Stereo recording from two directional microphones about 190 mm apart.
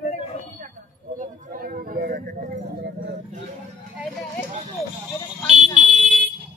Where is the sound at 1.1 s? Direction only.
45° right (ahead or behind).